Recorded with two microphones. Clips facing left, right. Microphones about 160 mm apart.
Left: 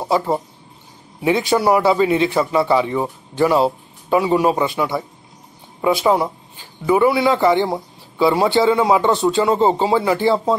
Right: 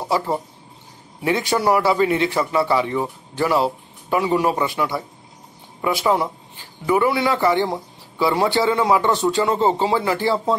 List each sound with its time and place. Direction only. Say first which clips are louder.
1.5 s a man's voice: left 2 dB; 15° left (ahead or behind)